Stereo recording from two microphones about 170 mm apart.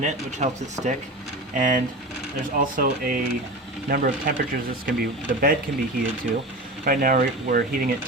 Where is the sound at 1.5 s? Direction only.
50° right (ahead or behind).